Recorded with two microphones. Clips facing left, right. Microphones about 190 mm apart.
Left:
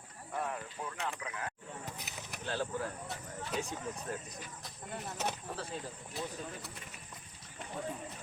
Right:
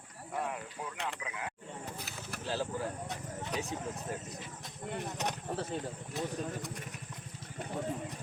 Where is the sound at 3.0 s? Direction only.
15° right (ahead or behind).